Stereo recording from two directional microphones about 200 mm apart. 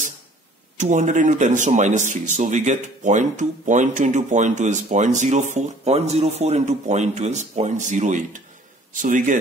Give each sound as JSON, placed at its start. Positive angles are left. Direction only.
{"t": 0.7, "sound": "a man's voice", "side_deg": -40}